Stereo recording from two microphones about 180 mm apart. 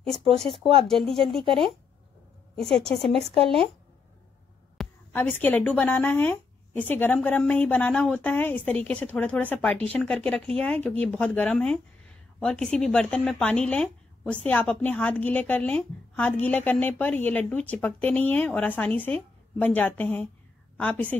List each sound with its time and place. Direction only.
0.0 s speech: centre (ahead or behind)
0.5 s speech: 30° right (ahead or behind)
0.8 s speech: centre (ahead or behind)
2.5 s a woman's voice: 5° left (ahead or behind)
3.3 s speech: 30° right (ahead or behind)
4.8 s a sound: centre (ahead or behind)
5.1 s a woman's voice: 10° left (ahead or behind)